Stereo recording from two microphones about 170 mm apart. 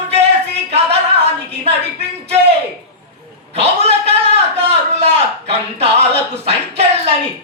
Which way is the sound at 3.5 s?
35° right (ahead or behind).